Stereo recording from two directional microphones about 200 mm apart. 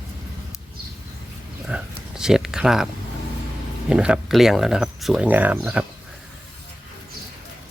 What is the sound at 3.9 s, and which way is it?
Speech, 5° right (ahead or behind).